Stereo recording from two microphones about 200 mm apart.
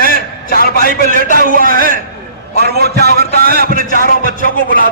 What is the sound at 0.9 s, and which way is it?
A man's voice, 45° right (ahead or behind).